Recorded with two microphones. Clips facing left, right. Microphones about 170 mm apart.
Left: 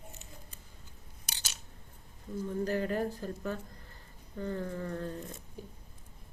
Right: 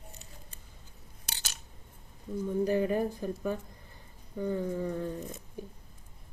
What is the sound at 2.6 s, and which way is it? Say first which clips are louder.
Speech: right 4 dB; 15° right (ahead or behind).